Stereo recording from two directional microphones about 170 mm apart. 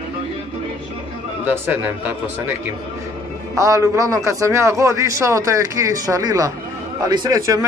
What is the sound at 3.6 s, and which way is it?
A man's voice, 20° right (ahead or behind).